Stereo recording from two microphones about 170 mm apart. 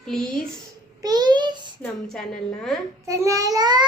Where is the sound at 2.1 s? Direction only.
Centre (ahead or behind).